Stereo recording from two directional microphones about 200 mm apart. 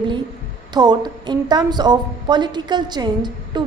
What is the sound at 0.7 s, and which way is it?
A woman's voice, 20° right (ahead or behind).